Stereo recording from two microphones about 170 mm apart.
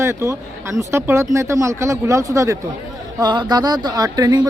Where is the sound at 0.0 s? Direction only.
15° right (ahead or behind).